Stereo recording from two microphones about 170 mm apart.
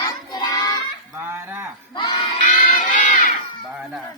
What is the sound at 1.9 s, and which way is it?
Crowd, 25° left (ahead or behind).